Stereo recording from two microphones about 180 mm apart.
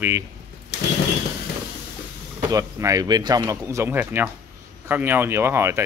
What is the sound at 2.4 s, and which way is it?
Speech, 20° right (ahead or behind).